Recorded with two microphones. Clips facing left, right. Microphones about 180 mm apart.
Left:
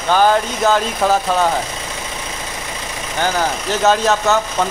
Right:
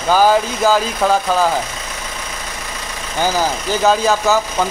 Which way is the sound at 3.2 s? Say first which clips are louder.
Right 1 dB; 5° right (ahead or behind).